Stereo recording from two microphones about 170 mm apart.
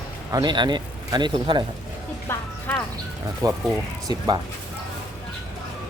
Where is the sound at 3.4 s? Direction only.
20° right (ahead or behind).